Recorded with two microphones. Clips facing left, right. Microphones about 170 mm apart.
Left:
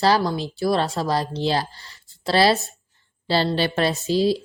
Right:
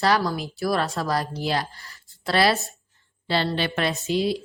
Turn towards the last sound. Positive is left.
turn(degrees=30)  # may be behind; listen again after turning